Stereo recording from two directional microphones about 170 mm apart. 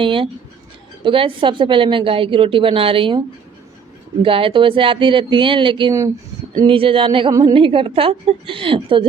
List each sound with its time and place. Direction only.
0.0 s a woman's voice: 30° right (ahead or behind)
4.2 s a woman's voice: 30° right (ahead or behind)